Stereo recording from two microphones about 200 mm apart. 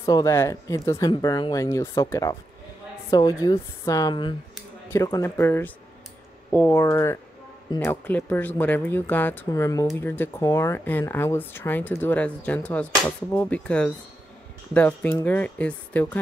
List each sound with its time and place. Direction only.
0.0 s a woman's voice: 15° left (ahead or behind)